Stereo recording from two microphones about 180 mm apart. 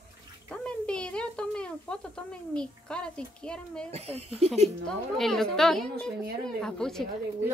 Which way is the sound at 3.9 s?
35° right (ahead or behind).